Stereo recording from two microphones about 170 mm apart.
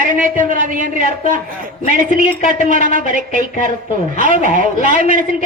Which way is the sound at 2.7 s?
50° right (ahead or behind).